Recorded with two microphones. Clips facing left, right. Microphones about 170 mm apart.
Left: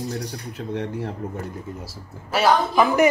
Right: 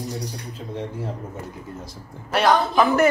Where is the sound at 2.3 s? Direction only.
5° left (ahead or behind).